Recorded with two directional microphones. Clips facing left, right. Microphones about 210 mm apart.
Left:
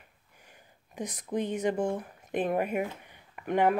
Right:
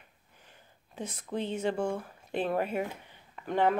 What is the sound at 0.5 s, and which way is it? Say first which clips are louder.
Speech: left 2 dB; 15° left (ahead or behind).